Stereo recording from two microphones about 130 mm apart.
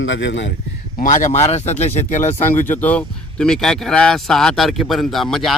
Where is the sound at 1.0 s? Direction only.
75° left (ahead or behind).